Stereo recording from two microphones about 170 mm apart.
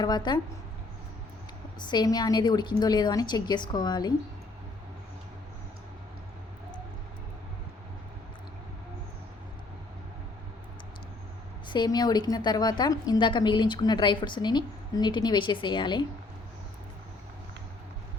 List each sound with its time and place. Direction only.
0.0 s a woman's voice: 25° left (ahead or behind)
1.9 s a woman's voice: 25° left (ahead or behind)
11.7 s a woman's voice: 25° left (ahead or behind)